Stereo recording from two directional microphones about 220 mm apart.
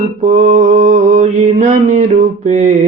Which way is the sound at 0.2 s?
30° right (ahead or behind).